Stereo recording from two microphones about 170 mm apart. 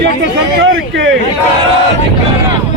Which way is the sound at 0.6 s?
90° right.